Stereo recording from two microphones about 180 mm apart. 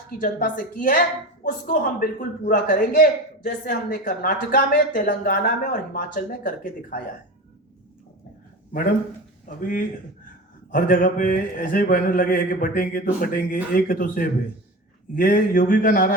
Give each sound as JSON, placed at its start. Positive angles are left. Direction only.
{"t": 0.2, "sound": "a man's voice", "side_deg": 50}
{"t": 10.7, "sound": "a man's voice", "side_deg": 50}